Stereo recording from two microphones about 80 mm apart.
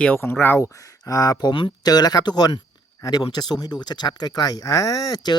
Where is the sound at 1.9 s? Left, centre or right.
Left.